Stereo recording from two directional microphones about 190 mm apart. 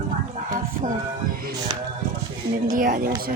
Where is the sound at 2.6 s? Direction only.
45° right (ahead or behind).